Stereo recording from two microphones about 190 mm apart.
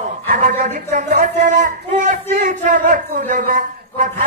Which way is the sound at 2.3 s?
45° right (ahead or behind).